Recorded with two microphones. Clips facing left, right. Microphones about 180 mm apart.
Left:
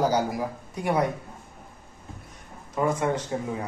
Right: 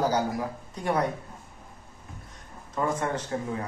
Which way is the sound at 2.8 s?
15° left (ahead or behind).